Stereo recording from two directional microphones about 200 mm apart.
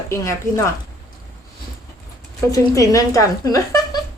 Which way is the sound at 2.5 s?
15° left (ahead or behind).